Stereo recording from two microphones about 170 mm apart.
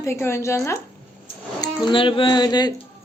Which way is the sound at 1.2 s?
30° left (ahead or behind).